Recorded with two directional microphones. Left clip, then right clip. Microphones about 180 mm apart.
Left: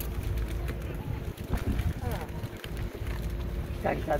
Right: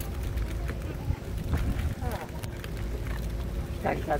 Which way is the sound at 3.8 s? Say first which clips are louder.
Even; 45° left (ahead or behind).